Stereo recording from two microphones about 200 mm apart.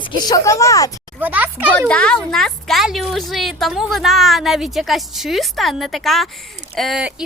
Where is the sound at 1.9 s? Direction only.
5° left (ahead or behind).